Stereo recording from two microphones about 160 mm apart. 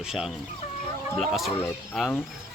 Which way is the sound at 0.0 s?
5° right (ahead or behind).